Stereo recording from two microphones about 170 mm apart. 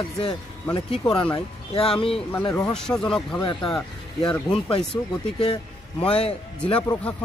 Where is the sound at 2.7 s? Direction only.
5° left (ahead or behind).